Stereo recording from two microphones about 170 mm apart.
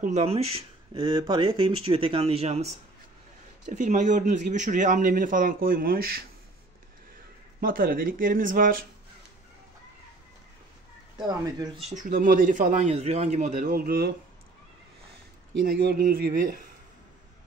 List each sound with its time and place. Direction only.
0.0 s speech: 40° right (ahead or behind)
3.7 s a man's voice: 45° right (ahead or behind); by 6.2 s 65° right (ahead or behind)
7.6 s speech: 60° right (ahead or behind)
11.1 s speech: 25° right (ahead or behind)
11.9 s a man's voice: 50° right (ahead or behind)
15.6 s speech: 60° right (ahead or behind)